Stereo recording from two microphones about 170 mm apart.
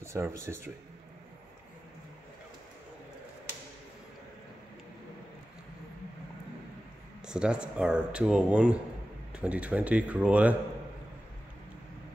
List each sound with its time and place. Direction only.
0.0 s speech: 15° right (ahead or behind)
7.2 s speech: 5° right (ahead or behind)